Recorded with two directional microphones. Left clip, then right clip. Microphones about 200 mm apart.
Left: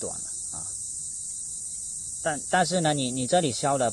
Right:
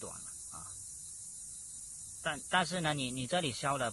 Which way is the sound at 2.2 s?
25° left (ahead or behind).